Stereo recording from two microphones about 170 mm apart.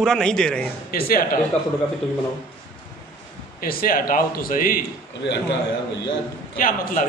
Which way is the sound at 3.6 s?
60° left (ahead or behind).